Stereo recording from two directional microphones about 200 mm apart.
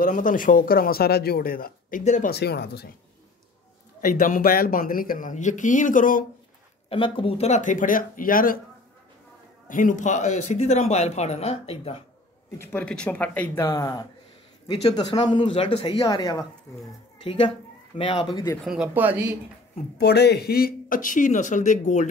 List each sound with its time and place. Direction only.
0.0 s speech: 40° left (ahead or behind)
2.3 s speech: 55° left (ahead or behind)
4.0 s speech: 45° left (ahead or behind)
6.9 s speech: 25° left (ahead or behind); by 8.5 s 45° left (ahead or behind)
9.7 s speech: 40° left (ahead or behind)
12.5 s speech: 5° left (ahead or behind)
18.6 s speech: 5° right (ahead or behind)
20.0 s speech: 55° left (ahead or behind); by 22.0 s 40° left (ahead or behind)